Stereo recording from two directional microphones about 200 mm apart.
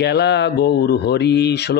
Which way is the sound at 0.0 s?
55° left (ahead or behind).